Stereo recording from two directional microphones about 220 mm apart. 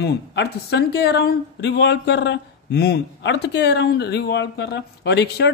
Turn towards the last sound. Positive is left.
turn(degrees=50)  # may be behind; listen again after turning